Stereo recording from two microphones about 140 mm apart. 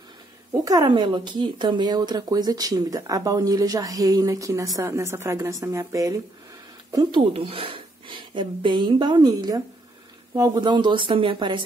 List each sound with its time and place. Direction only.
0.7 s speech: 30° right (ahead or behind)
7.3 s speech: 40° right (ahead or behind)